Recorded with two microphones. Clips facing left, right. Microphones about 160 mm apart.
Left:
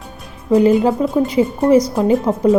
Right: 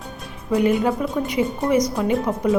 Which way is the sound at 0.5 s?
30° left (ahead or behind).